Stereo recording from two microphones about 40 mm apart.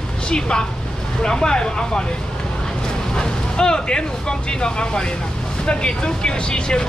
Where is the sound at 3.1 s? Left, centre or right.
Left.